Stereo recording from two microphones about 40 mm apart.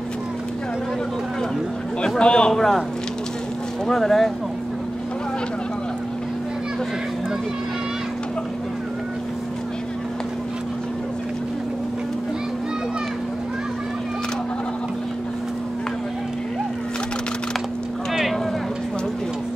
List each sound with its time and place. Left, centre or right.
2.1 s a sound: left
2.5 s speech: centre
3.8 s speech: centre